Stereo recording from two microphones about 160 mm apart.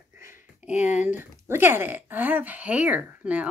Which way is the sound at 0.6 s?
50° left (ahead or behind).